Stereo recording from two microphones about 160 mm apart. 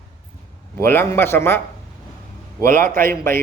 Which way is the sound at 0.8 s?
15° left (ahead or behind).